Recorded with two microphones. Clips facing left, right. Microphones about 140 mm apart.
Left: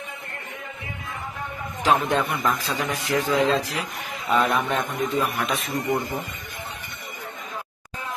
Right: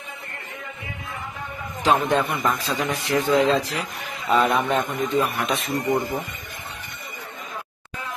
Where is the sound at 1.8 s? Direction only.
Centre (ahead or behind).